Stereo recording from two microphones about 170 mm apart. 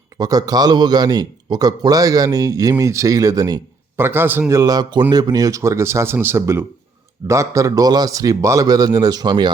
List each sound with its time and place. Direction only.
0.2 s a man's voice: 20° right (ahead or behind)